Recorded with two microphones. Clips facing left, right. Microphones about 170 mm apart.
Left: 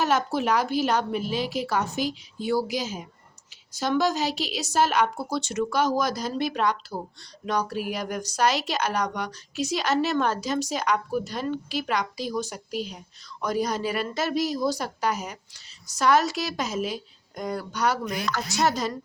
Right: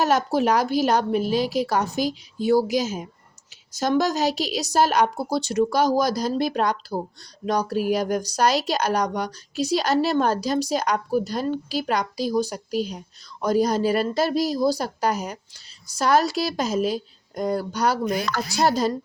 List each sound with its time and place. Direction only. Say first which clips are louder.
0.0 s a woman's voice: right 4 dB; 40° right (ahead or behind)